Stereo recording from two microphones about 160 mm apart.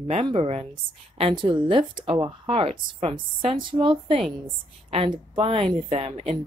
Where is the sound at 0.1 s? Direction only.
35° right (ahead or behind).